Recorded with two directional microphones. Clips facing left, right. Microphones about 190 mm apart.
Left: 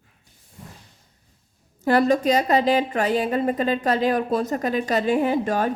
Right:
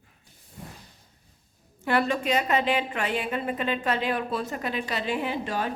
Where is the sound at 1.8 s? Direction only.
40° left (ahead or behind).